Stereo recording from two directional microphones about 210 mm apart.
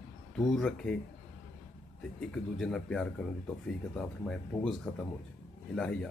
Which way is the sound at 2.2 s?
5° left (ahead or behind).